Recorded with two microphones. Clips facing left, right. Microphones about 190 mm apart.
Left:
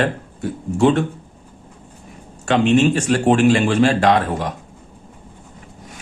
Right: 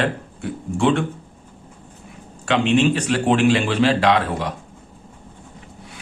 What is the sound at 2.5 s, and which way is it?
Speech, 45° left (ahead or behind).